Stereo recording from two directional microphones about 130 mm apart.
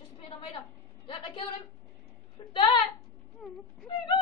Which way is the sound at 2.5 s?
35° left (ahead or behind).